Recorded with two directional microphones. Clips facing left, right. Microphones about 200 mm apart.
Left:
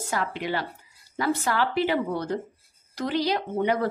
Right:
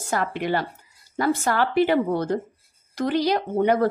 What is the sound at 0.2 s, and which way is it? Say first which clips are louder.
A woman's voice: right 5 dB; 55° right (ahead or behind).